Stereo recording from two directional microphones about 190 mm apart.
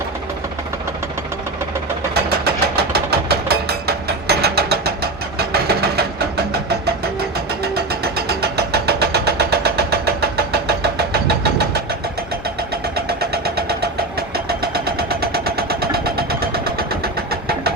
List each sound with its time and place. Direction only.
2.1 s a sound: 55° right (ahead or behind)
8.0 s vehicle: 55° right (ahead or behind)
13.3 s vehicle: 55° right (ahead or behind)